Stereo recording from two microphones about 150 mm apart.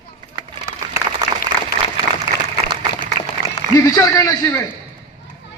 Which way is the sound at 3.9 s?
20° left (ahead or behind).